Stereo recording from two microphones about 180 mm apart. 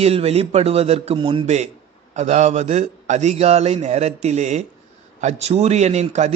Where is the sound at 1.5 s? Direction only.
40° right (ahead or behind).